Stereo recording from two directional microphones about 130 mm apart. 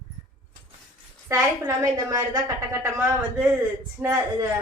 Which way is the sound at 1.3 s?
25° right (ahead or behind).